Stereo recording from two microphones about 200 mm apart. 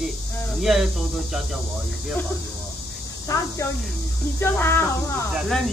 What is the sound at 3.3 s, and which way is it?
Cricket, 15° left (ahead or behind).